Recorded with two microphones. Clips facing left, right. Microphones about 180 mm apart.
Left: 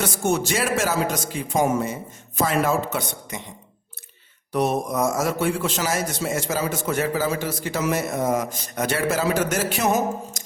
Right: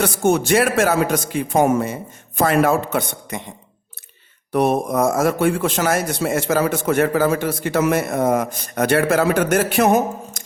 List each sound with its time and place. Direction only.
0.0 s a man's voice: 60° right (ahead or behind)
4.5 s a man's voice: 55° right (ahead or behind)